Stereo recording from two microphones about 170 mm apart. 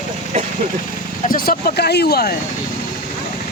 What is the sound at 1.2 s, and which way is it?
Speech, 55° left (ahead or behind).